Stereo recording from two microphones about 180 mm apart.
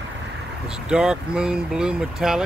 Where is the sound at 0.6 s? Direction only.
5° right (ahead or behind).